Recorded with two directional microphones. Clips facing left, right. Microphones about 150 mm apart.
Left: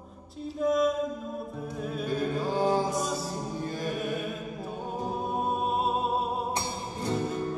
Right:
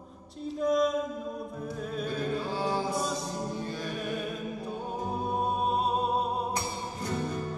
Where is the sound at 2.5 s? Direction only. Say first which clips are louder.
Left 4 dB; 45° left (ahead or behind).